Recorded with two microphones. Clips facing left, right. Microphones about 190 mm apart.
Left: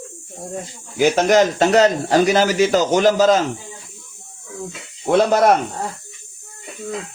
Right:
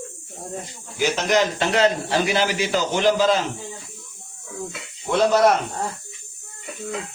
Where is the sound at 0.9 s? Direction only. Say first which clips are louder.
Left 6 dB; 50° left (ahead or behind).